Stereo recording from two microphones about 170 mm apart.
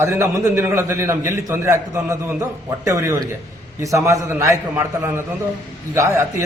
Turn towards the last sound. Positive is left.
turn(degrees=-15)  # may be behind; listen again after turning